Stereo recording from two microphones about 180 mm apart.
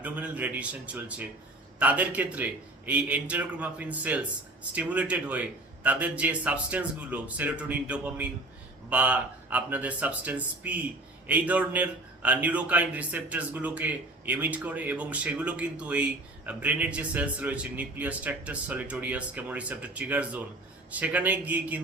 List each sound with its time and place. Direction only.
0.0 s a man's voice: 10° right (ahead or behind)